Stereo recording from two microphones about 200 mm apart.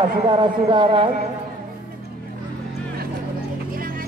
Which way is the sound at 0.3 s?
25° right (ahead or behind).